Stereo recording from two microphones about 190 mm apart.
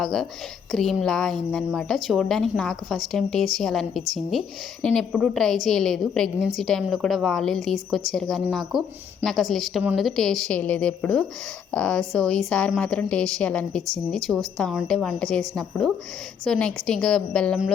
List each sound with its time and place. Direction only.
0.0 s a woman's voice: centre (ahead or behind)